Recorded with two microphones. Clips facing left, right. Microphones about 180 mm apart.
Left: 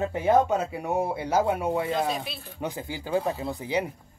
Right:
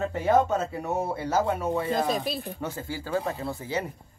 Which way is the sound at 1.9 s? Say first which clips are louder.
Right 2 dB; 40° right (ahead or behind).